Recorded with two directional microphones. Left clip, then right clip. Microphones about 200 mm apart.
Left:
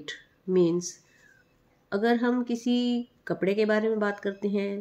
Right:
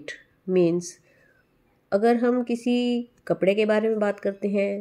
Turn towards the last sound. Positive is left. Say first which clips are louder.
# right 5 dB
turn(degrees=-10)  # may be behind; listen again after turning